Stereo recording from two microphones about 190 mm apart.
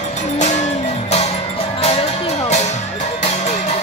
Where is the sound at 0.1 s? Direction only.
40° left (ahead or behind).